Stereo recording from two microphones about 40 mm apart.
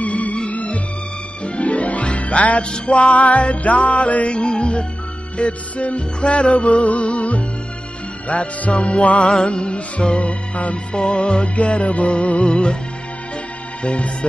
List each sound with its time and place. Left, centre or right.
0.0 s music: left
13.8 s music: left